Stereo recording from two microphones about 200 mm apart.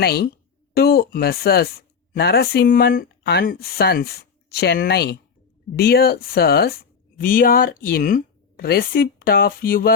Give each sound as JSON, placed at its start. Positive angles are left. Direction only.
{"t": 0.0, "sound": "speech", "side_deg": 55}